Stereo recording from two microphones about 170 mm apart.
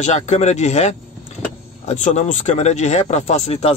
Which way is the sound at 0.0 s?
40° left (ahead or behind).